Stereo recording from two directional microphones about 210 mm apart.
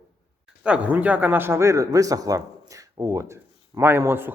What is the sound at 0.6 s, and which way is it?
Speech, 5° right (ahead or behind).